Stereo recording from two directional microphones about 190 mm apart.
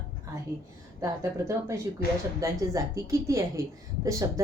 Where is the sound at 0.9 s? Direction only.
15° right (ahead or behind).